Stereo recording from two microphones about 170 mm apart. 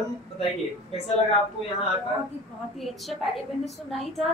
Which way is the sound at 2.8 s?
Centre (ahead or behind).